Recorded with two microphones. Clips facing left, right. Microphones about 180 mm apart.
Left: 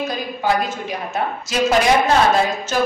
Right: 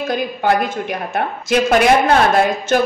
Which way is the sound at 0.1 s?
60° right (ahead or behind).